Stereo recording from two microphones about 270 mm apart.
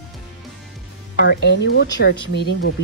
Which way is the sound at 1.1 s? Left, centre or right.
Left.